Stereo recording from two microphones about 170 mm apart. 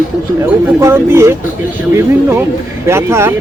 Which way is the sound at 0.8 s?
15° right (ahead or behind).